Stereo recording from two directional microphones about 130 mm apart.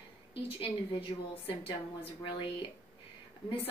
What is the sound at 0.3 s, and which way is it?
A woman's voice, 45° left (ahead or behind).